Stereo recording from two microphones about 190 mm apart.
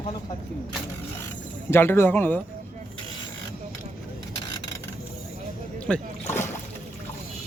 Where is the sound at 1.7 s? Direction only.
10° left (ahead or behind).